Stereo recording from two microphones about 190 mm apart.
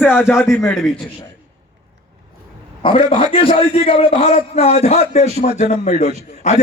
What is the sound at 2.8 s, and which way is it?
A man's voice, 30° left (ahead or behind).